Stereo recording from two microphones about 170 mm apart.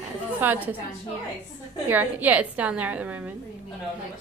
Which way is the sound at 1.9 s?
10° right (ahead or behind).